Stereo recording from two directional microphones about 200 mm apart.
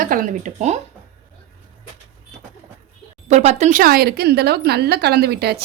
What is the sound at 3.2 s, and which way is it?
Speech, 35° right (ahead or behind).